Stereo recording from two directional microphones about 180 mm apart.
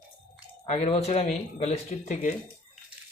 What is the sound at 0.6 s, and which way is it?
Speech, 35° left (ahead or behind).